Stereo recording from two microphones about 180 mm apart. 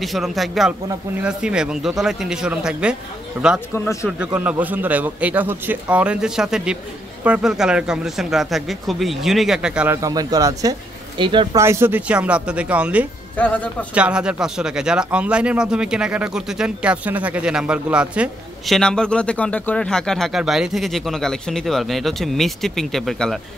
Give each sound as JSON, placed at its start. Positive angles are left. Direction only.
{"t": 0.0, "sound": "speech", "side_deg": 0}
{"t": 3.7, "sound": "a man's voice", "side_deg": 15}
{"t": 4.2, "sound": "a man's voice", "side_deg": -5}
{"t": 10.0, "sound": "speech", "side_deg": -20}
{"t": 11.6, "sound": "a man's voice", "side_deg": -15}
{"t": 13.4, "sound": "a man's voice", "side_deg": 10}
{"t": 13.9, "sound": "speech", "side_deg": -5}
{"t": 18.8, "sound": "speech", "side_deg": 5}